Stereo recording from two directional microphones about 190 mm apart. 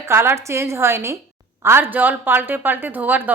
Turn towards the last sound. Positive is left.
turn(degrees=-10)  # may be behind; listen again after turning